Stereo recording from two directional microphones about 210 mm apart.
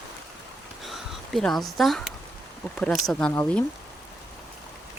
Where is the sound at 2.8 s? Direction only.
5° left (ahead or behind).